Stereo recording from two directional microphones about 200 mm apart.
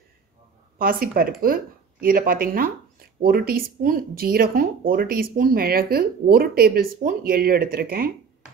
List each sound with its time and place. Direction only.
0.7 s speech: 45° right (ahead or behind)